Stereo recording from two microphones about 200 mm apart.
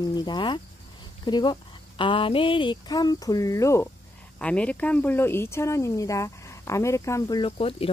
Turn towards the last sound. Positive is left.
turn(degrees=30)  # may be behind; listen again after turning